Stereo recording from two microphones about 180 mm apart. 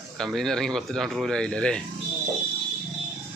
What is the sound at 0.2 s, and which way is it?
Speech, 5° left (ahead or behind).